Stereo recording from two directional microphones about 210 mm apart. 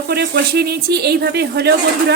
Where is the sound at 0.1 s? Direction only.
50° right (ahead or behind).